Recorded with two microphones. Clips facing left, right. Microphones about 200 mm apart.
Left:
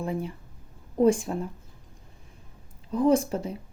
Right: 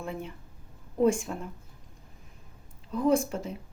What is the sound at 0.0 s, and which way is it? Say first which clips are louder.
Speech: left 6 dB; 35° left (ahead or behind).